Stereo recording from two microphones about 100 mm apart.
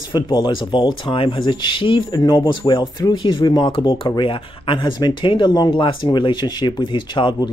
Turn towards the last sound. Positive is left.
turn(degrees=50)  # may be behind; listen again after turning